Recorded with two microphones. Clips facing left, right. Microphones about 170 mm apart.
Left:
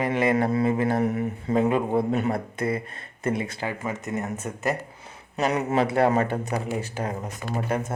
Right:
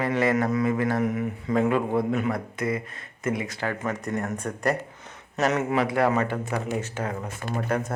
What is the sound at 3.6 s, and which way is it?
Speech, 15° left (ahead or behind).